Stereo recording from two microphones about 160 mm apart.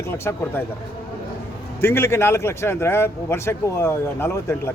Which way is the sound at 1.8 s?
15° left (ahead or behind).